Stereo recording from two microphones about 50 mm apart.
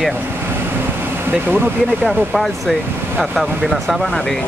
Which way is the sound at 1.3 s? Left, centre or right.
Right.